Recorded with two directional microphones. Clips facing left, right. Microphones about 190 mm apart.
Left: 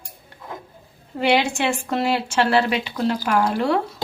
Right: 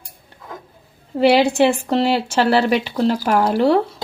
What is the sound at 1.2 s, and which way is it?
Speech, 35° right (ahead or behind).